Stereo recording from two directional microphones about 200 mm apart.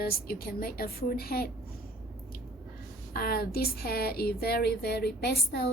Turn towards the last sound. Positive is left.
turn(degrees=55)  # may be behind; listen again after turning